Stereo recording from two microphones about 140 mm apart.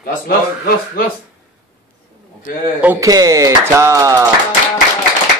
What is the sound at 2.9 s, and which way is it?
Speech, 25° right (ahead or behind).